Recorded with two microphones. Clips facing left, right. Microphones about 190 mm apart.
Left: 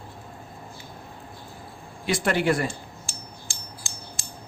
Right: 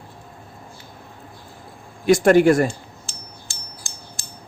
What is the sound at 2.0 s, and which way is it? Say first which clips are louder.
Speech: right 10 dB; 45° right (ahead or behind).